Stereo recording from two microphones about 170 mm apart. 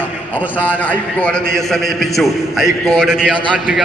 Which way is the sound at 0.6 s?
10° left (ahead or behind).